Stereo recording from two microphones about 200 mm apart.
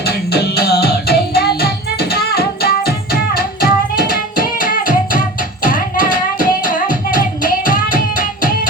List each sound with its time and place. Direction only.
0.3 s music: 55° left (ahead or behind)